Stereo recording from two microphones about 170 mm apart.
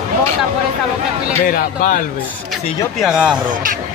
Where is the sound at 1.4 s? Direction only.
55° left (ahead or behind).